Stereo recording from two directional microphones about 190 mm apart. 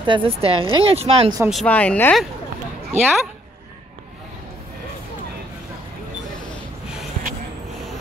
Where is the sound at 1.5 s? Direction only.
5° left (ahead or behind).